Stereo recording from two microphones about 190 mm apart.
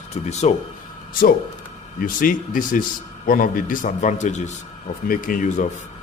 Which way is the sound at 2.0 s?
45° left (ahead or behind).